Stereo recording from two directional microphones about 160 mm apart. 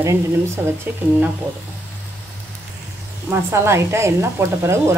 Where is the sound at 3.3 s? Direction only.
15° right (ahead or behind).